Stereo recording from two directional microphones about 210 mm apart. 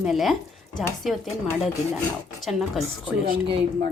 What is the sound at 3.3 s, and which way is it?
Speech, 45° right (ahead or behind).